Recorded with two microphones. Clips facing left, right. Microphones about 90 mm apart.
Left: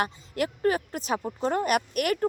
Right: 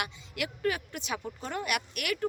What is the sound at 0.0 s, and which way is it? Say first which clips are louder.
Speech: left 7 dB; 40° left (ahead or behind).